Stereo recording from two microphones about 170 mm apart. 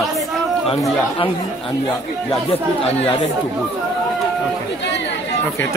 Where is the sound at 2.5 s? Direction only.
35° left (ahead or behind).